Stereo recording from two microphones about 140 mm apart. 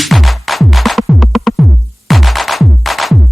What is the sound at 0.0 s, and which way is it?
Music, centre (ahead or behind).